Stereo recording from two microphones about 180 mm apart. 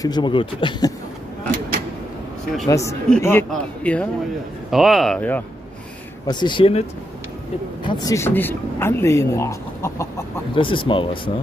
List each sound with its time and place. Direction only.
0.0 s speech: 25° left (ahead or behind)
2.7 s speech: 15° left (ahead or behind)
6.2 s speech: 25° left (ahead or behind)
7.8 s speech: 20° left (ahead or behind)
10.5 s speech: 30° left (ahead or behind)